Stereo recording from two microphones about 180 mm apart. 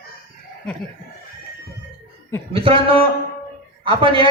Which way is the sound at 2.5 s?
30° right (ahead or behind).